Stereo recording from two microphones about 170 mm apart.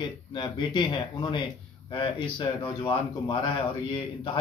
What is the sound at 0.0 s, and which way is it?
Speech, 30° left (ahead or behind).